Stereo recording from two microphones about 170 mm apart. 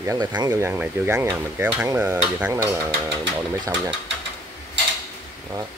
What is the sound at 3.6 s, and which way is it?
Speech, 25° right (ahead or behind).